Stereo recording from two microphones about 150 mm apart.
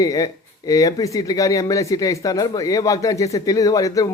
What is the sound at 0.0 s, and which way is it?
Speech, 25° left (ahead or behind).